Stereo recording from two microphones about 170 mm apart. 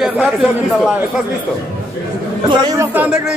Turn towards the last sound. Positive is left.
turn(degrees=-5)  # may be behind; listen again after turning